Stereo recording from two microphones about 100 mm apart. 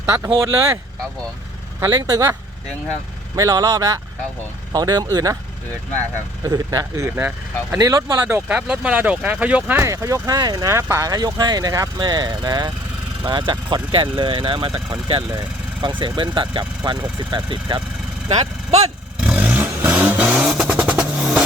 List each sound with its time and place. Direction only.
0.3 s speech: 30° right (ahead or behind)
1.9 s speech: 40° right (ahead or behind)
3.3 s speech: 35° right (ahead or behind)
6.4 s speech: 35° right (ahead or behind)
7.2 s speech: 15° right (ahead or behind)
7.8 s speech: 35° right (ahead or behind)
8.4 s speech: 10° right (ahead or behind)
9.8 s speech: 30° right (ahead or behind); by 14.7 s 60° right (ahead or behind)
15.3 s speech: 45° right (ahead or behind)
19.2 s vehicle: 10° right (ahead or behind)